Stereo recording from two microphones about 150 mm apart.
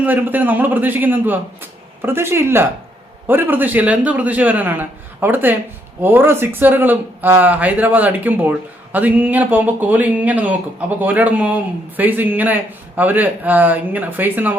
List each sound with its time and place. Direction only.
0.0 s speech: 10° right (ahead or behind)